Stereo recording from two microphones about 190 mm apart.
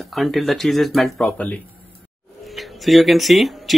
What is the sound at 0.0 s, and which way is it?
Speech, centre (ahead or behind).